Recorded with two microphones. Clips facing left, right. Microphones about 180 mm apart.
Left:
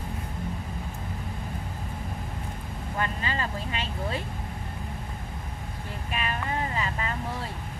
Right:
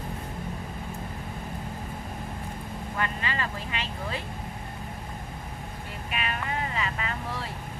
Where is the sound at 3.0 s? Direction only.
35° left (ahead or behind).